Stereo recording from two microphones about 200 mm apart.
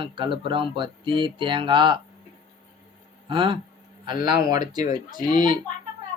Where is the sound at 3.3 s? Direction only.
25° right (ahead or behind).